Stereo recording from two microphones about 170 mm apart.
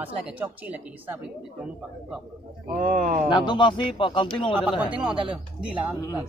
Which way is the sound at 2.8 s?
55° right (ahead or behind).